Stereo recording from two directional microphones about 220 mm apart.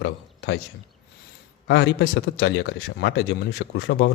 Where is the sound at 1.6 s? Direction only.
50° left (ahead or behind).